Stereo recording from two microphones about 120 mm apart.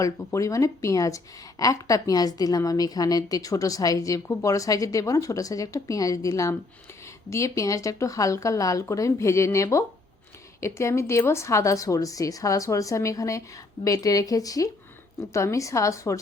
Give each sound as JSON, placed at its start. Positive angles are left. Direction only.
{"t": 0.0, "sound": "speech", "side_deg": 25}